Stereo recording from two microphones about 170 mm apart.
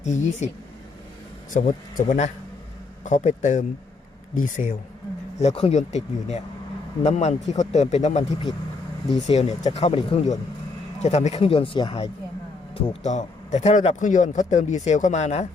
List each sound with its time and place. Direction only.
0.0 s speech: 45° left (ahead or behind)
1.5 s speech: 50° left (ahead or behind)